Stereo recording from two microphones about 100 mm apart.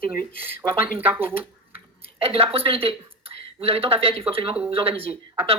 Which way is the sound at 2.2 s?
70° right (ahead or behind).